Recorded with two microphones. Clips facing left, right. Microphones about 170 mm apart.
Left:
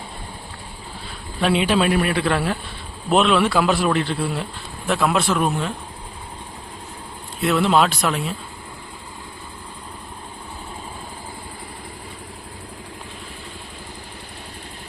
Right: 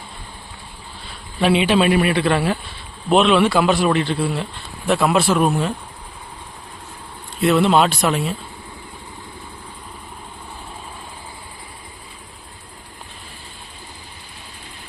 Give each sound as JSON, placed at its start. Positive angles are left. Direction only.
{"t": 1.4, "sound": "a man's voice", "side_deg": 0}
{"t": 7.4, "sound": "a man's voice", "side_deg": 0}